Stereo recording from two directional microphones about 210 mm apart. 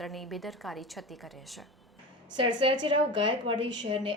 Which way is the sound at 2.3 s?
25° right (ahead or behind).